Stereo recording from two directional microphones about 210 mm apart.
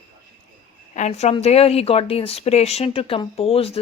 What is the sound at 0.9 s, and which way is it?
Speech, 30° left (ahead or behind).